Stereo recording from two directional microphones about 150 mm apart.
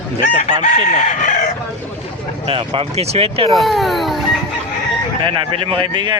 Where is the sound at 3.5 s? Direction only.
Centre (ahead or behind).